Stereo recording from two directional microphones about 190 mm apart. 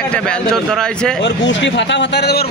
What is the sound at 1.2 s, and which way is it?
A man's voice, 70° left (ahead or behind).